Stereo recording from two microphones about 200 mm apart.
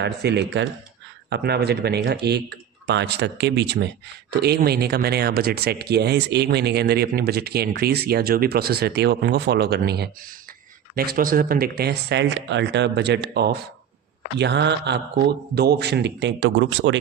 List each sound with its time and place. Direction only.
0.0 s speech: 60° right (ahead or behind)